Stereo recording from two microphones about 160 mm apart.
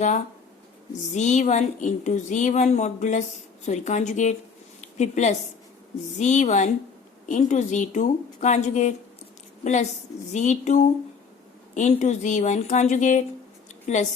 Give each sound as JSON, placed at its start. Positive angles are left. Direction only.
{"t": 1.1, "sound": "a woman's voice", "side_deg": 45}